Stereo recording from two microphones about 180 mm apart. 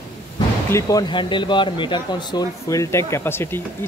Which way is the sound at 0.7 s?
20° left (ahead or behind).